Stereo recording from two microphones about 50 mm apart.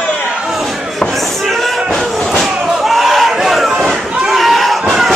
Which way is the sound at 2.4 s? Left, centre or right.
Centre.